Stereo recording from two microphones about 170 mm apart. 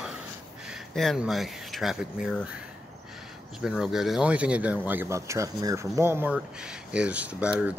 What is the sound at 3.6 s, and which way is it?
Speech, centre (ahead or behind).